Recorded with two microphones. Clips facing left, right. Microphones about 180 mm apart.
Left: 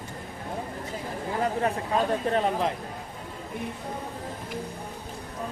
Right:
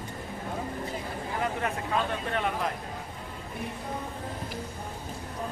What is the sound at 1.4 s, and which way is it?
Speech, 35° left (ahead or behind).